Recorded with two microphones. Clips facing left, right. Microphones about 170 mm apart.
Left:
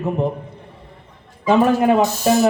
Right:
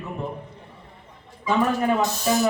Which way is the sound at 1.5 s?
75° left (ahead or behind).